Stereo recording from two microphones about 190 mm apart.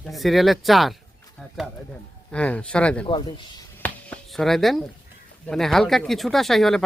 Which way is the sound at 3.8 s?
5° left (ahead or behind).